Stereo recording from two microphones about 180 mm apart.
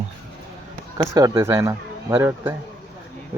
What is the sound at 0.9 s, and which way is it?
Speech, 20° right (ahead or behind).